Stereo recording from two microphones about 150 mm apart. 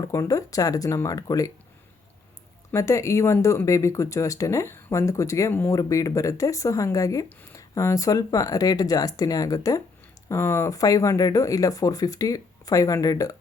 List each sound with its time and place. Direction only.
0.0 s speech: 20° left (ahead or behind)
2.7 s speech: 20° left (ahead or behind)